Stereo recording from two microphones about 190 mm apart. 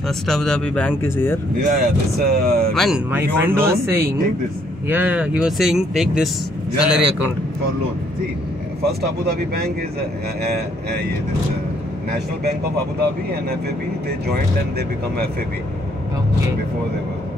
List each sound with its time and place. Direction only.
0.3 s speech: 5° left (ahead or behind)
1.6 s speech: 50° right (ahead or behind)
2.7 s speech: centre (ahead or behind)
3.1 s speech: 10° right (ahead or behind)
9.0 s speech: 55° right (ahead or behind)